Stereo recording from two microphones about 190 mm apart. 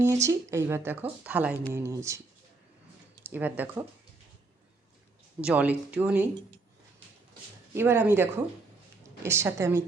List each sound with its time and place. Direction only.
0.0 s speech: 15° right (ahead or behind)
3.2 s speech: 10° right (ahead or behind)
5.4 s speech: 5° right (ahead or behind)
7.7 s speech: 10° right (ahead or behind)